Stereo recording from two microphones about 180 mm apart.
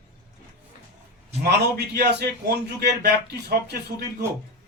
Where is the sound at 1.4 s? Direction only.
65° right (ahead or behind).